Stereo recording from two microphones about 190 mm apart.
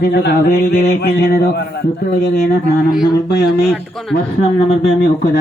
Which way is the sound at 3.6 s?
Centre (ahead or behind).